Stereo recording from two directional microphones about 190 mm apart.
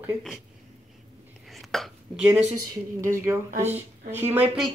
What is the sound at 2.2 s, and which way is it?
Speech, 15° right (ahead or behind).